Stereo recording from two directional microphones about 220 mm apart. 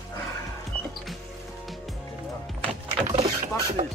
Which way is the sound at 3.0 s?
25° right (ahead or behind).